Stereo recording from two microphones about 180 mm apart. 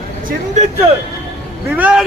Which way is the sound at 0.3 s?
40° right (ahead or behind).